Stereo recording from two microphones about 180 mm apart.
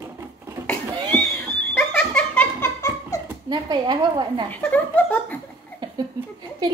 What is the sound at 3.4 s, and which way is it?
A woman's voice, 25° right (ahead or behind).